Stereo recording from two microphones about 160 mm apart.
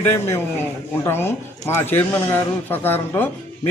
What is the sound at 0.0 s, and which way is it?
Speech, 15° left (ahead or behind).